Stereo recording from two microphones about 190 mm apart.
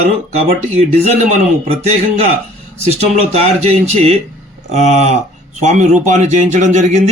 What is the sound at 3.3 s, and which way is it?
A man's voice, 35° right (ahead or behind).